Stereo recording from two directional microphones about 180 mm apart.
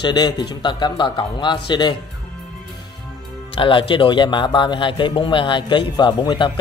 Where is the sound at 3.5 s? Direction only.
30° left (ahead or behind).